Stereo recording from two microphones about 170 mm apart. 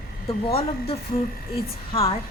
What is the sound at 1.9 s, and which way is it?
Speech, 35° left (ahead or behind).